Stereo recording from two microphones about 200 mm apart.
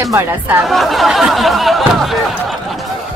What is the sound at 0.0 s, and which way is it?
Speech, 10° right (ahead or behind).